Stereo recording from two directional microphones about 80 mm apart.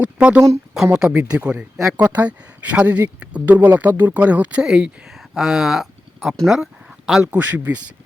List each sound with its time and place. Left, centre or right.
0.0 s speech: centre
7.1 s speech: centre